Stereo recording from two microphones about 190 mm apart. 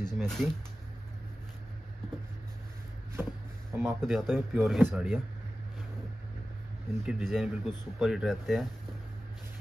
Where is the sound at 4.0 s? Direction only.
Centre (ahead or behind).